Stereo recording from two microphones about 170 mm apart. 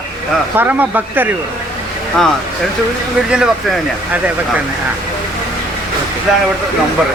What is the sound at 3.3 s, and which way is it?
Speech, 5° right (ahead or behind).